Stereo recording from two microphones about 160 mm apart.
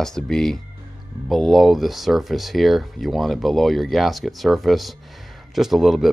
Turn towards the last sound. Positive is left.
turn(degrees=0)  # may be behind; listen again after turning